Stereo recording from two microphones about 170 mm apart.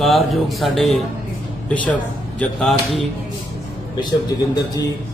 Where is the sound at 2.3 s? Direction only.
Centre (ahead or behind).